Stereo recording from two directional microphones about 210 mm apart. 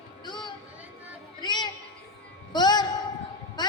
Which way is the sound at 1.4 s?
20° left (ahead or behind).